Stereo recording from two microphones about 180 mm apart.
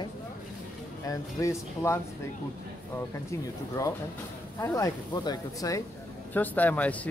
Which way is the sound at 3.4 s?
20° left (ahead or behind).